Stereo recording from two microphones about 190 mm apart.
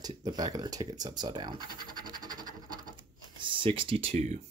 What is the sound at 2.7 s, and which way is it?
Scratch, 20° right (ahead or behind).